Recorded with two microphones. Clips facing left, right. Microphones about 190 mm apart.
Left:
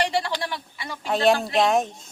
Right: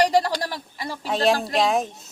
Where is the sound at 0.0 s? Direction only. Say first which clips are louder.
Right 5 dB; 40° right (ahead or behind).